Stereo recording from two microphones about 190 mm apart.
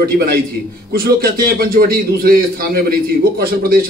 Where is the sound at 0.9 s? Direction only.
50° right (ahead or behind).